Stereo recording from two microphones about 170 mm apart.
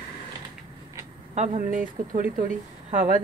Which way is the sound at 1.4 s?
50° right (ahead or behind).